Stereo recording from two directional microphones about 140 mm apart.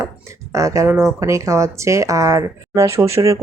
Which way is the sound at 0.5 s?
20° right (ahead or behind).